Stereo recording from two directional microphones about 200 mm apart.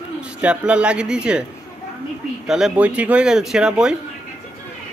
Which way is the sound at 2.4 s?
Centre (ahead or behind).